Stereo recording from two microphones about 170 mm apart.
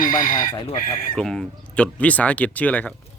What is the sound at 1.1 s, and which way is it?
Speech, 5° left (ahead or behind).